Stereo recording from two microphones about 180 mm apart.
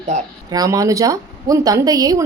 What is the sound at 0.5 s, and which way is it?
A woman's voice, 20° right (ahead or behind).